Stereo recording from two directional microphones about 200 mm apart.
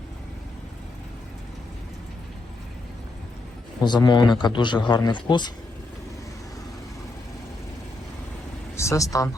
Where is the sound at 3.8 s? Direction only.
20° left (ahead or behind).